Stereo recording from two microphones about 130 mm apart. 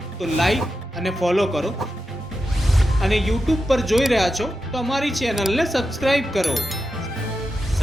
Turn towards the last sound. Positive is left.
turn(degrees=0)  # may be behind; listen again after turning